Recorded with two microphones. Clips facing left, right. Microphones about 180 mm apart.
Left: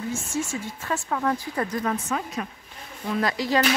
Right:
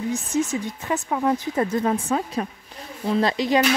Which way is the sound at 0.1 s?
20° right (ahead or behind).